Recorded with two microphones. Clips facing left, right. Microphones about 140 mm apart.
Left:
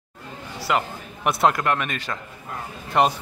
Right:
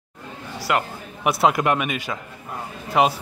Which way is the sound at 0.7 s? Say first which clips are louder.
Right 1 dB; 5° right (ahead or behind).